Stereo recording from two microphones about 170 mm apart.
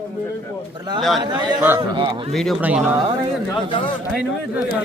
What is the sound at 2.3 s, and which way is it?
Speech, centre (ahead or behind).